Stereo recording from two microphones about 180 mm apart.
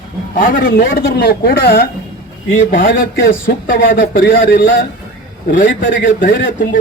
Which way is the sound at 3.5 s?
65° left (ahead or behind).